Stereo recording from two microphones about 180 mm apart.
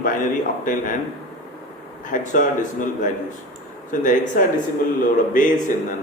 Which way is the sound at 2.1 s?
45° left (ahead or behind).